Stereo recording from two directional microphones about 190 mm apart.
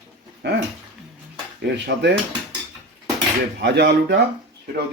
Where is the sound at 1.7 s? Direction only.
65° right (ahead or behind).